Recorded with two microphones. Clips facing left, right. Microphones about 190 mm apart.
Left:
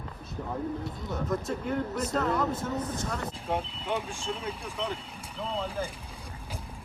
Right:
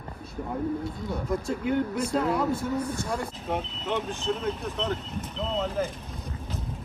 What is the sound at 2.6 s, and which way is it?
Speech, 20° left (ahead or behind).